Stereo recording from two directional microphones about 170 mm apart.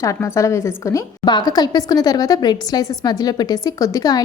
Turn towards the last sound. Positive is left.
turn(degrees=20)  # may be behind; listen again after turning